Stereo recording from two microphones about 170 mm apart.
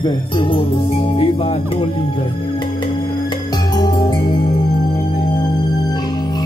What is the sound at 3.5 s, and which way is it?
Music, 25° left (ahead or behind).